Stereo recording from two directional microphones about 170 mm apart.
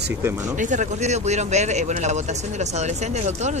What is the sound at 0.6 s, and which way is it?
Speech, 45° right (ahead or behind).